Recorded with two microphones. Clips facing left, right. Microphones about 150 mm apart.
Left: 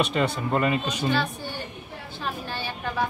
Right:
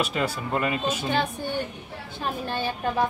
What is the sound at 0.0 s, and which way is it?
Speech, 5° right (ahead or behind).